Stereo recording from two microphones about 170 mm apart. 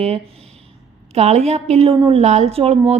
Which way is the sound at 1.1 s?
40° right (ahead or behind).